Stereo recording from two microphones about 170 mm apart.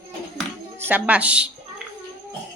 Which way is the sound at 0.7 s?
10° right (ahead or behind).